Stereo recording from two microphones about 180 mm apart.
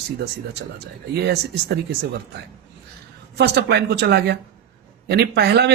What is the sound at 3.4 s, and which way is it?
Speech, 65° right (ahead or behind).